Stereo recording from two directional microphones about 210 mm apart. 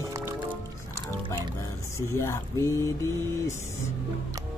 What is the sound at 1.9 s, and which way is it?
Speech, 15° left (ahead or behind).